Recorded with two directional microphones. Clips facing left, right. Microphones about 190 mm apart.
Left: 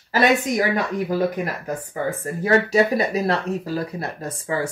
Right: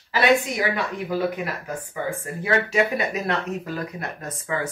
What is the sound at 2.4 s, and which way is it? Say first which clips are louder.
Speech: left 4 dB; 40° left (ahead or behind).